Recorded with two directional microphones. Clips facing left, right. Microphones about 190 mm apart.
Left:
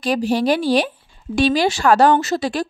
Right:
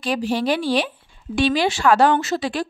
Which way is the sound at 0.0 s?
40° left (ahead or behind).